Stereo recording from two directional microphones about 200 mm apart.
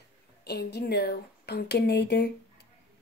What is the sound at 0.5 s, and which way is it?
Speech, 55° left (ahead or behind).